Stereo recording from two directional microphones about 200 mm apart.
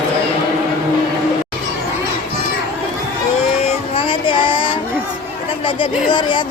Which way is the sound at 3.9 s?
25° left (ahead or behind).